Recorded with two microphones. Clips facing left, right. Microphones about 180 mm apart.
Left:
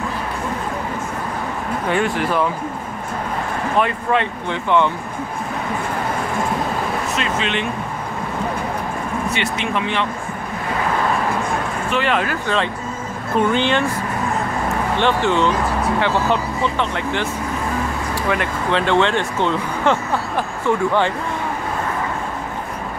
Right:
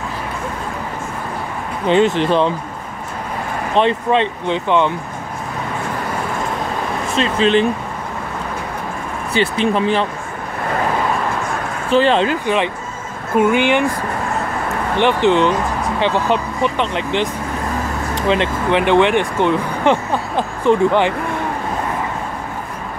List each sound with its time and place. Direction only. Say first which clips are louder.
1.9 s speech: right 7 dB; 20° right (ahead or behind)
3.7 s speech: right 4 dB; 25° right (ahead or behind)
7.2 s speech: right 11 dB; 35° right (ahead or behind)
9.3 s speech: right 11 dB; 35° right (ahead or behind)
11.9 s speech: right 7 dB; 30° right (ahead or behind)
13.4 s speech: right 3 dB; 10° right (ahead or behind)
15.0 s speech: right 5 dB; 15° right (ahead or behind)